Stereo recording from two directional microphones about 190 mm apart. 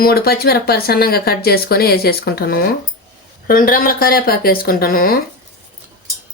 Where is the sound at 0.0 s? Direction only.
55° left (ahead or behind).